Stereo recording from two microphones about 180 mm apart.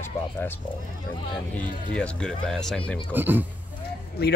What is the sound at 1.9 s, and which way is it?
Speech, 5° left (ahead or behind).